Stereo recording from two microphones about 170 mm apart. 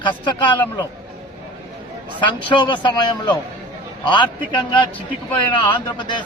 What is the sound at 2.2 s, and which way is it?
A man's voice, 30° left (ahead or behind).